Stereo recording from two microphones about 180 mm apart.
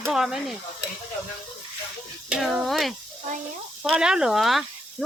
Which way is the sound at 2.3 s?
Centre (ahead or behind).